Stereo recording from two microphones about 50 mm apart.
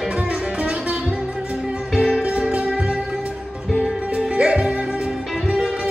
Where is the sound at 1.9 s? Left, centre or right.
Centre.